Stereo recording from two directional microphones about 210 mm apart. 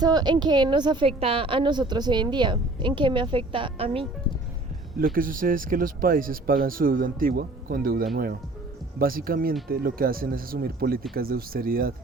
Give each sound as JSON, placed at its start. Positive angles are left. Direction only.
{"t": 0.0, "sound": "a woman's voice", "side_deg": -20}
{"t": 4.9, "sound": "speech", "side_deg": -45}